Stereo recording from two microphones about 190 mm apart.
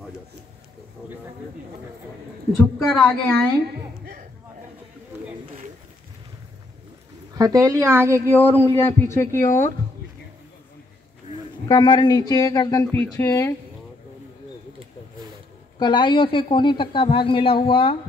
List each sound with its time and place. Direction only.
2.9 s a woman's voice: 5° left (ahead or behind)
7.3 s a woman's voice: 20° right (ahead or behind)
8.3 s speech: 10° left (ahead or behind)
11.6 s speech: 20° left (ahead or behind)
15.8 s speech: 25° left (ahead or behind)